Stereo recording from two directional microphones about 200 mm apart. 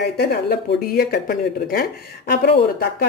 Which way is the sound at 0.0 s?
55° left (ahead or behind).